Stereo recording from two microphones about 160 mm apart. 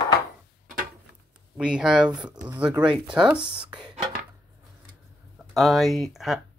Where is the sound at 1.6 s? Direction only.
5° right (ahead or behind).